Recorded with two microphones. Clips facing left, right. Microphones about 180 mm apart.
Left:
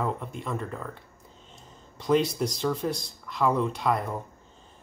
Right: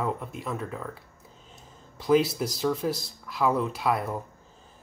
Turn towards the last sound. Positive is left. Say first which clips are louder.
# even
turn(degrees=-5)  # may be behind; listen again after turning